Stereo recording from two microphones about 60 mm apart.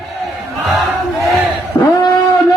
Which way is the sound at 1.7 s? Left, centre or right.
Left.